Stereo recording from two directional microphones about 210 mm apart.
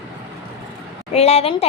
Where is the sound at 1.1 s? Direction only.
30° left (ahead or behind).